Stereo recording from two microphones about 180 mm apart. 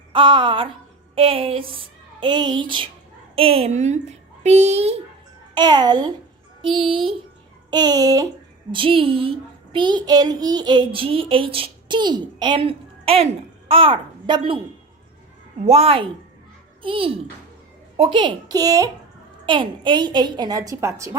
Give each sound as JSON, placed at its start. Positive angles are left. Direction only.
{"t": 0.1, "sound": "a child's voice", "side_deg": -30}
{"t": 5.5, "sound": "a child's voice", "side_deg": -25}
{"t": 15.6, "sound": "a woman's voice", "side_deg": -35}